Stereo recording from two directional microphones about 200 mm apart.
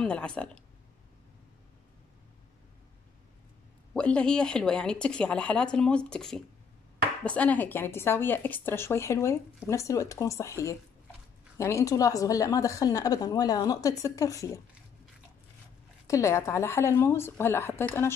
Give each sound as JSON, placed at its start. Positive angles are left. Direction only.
{"t": 0.0, "sound": "speech", "side_deg": 5}
{"t": 3.9, "sound": "speech", "side_deg": 5}
{"t": 16.1, "sound": "speech", "side_deg": 15}